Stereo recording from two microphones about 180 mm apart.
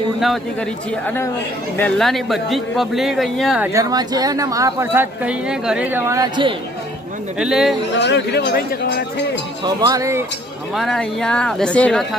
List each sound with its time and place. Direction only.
0.9 s a woman's voice: 10° left (ahead or behind)
3.7 s speech: 20° right (ahead or behind)
7.3 s a man's voice: 5° right (ahead or behind)
7.9 s speech: 70° left (ahead or behind)
9.6 s speech: 20° right (ahead or behind)
10.8 s a man's voice: centre (ahead or behind)